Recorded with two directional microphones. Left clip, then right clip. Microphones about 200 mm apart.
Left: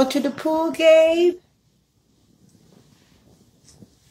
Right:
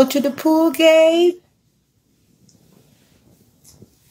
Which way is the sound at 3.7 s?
10° right (ahead or behind).